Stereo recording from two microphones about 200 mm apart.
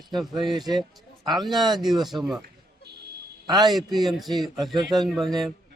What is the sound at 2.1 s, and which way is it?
Speech, centre (ahead or behind).